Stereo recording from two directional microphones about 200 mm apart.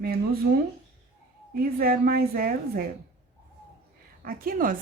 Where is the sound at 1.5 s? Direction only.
50° right (ahead or behind).